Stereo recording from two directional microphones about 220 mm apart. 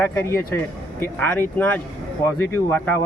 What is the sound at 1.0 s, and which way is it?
Speech, 10° left (ahead or behind).